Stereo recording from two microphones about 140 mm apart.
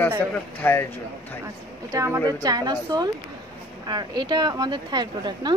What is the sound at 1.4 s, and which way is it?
A woman's voice, 20° right (ahead or behind).